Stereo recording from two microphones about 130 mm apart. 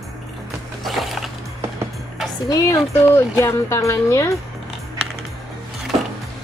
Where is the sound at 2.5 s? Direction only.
20° left (ahead or behind).